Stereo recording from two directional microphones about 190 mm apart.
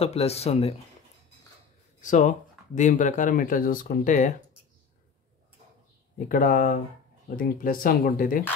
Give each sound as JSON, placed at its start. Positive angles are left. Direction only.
{"t": 0.0, "sound": "speech", "side_deg": 35}
{"t": 2.0, "sound": "speech", "side_deg": 40}
{"t": 6.1, "sound": "speech", "side_deg": 45}